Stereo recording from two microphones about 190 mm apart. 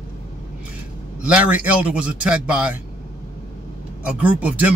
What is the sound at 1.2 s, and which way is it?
Speech, 5° right (ahead or behind).